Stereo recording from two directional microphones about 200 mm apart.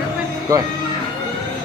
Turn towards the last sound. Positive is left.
turn(degrees=-15)  # may be behind; listen again after turning